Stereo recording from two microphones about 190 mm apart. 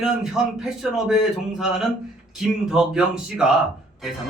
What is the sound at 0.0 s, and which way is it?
A man's voice, centre (ahead or behind).